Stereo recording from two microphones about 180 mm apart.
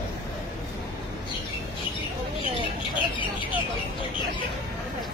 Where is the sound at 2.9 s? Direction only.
25° left (ahead or behind).